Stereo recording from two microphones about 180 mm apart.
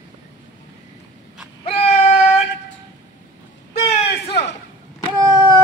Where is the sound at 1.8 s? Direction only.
35° left (ahead or behind).